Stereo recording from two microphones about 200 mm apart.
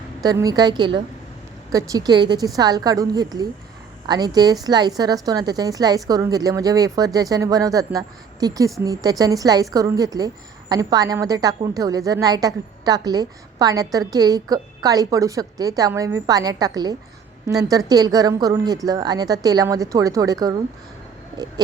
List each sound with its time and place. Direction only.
0.2 s a woman's voice: 20° right (ahead or behind)